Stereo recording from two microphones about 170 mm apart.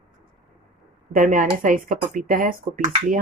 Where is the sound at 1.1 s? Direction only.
50° right (ahead or behind).